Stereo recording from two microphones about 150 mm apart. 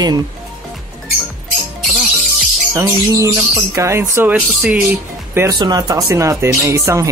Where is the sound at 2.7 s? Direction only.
20° right (ahead or behind).